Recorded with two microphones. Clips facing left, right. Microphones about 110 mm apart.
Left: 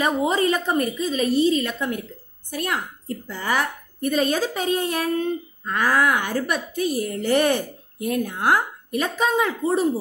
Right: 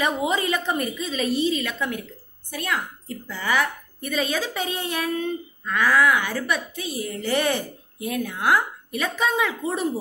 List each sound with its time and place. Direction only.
0.0 s a woman's voice: 40° left (ahead or behind)
9.6 s a woman's voice: 30° left (ahead or behind)